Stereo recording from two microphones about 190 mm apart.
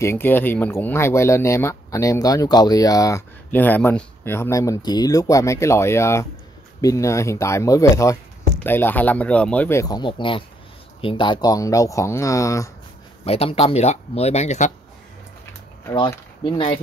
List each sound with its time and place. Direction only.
0.0 s speech: 10° left (ahead or behind)
13.2 s speech: 30° left (ahead or behind)
15.9 s speech: 25° left (ahead or behind)